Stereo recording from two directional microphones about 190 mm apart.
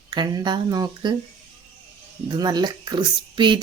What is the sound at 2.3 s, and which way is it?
Speech, 20° right (ahead or behind).